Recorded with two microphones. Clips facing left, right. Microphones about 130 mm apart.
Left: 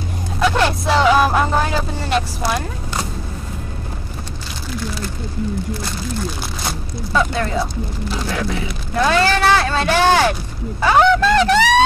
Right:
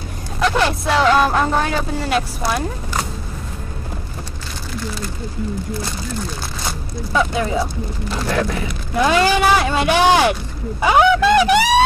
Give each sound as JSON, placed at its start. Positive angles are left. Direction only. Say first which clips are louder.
{"t": 0.4, "sound": "speech", "louder": "left 1 dB", "side_deg": 0}
{"t": 7.1, "sound": "speech", "louder": "even", "side_deg": -10}
{"t": 8.9, "sound": "speech", "louder": "right 1 dB", "side_deg": -10}